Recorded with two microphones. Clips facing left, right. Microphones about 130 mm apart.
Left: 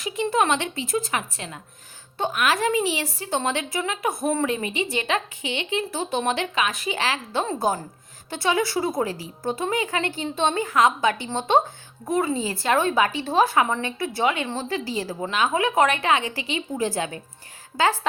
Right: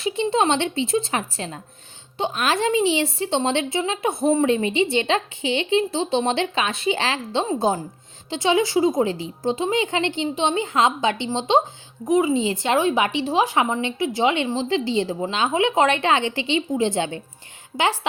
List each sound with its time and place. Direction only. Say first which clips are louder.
0.0 s speech: right 2 dB; 25° right (ahead or behind)
2.1 s a woman's voice: right 1 dB; 20° right (ahead or behind)